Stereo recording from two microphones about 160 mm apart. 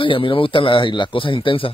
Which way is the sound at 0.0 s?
30° left (ahead or behind).